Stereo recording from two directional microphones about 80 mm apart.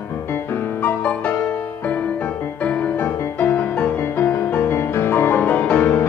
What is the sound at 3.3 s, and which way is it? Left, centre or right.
Music, left.